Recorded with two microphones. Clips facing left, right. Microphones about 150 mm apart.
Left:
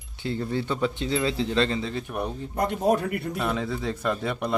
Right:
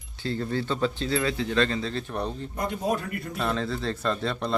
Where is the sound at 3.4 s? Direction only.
10° left (ahead or behind).